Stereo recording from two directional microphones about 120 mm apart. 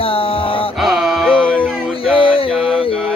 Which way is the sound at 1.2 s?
10° left (ahead or behind).